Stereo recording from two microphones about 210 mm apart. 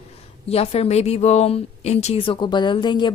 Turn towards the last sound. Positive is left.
turn(degrees=20)  # may be behind; listen again after turning